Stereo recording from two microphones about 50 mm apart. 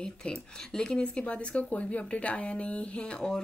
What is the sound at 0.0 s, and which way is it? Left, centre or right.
Speech, centre.